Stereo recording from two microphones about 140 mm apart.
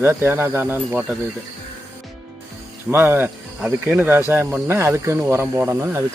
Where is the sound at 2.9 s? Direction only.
15° right (ahead or behind).